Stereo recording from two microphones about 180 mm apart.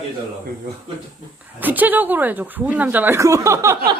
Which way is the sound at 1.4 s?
10° right (ahead or behind).